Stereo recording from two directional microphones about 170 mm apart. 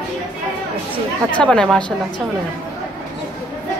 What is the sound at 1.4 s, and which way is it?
Speech, 5° left (ahead or behind).